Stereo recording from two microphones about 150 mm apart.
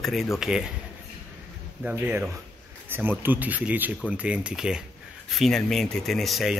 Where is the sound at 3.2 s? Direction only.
10° right (ahead or behind).